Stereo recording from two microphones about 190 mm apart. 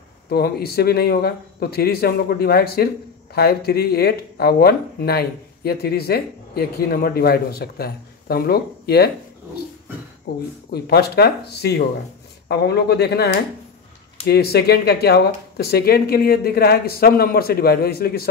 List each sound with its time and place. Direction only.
0.3 s speech: 55° left (ahead or behind)
10.3 s speech: 55° left (ahead or behind)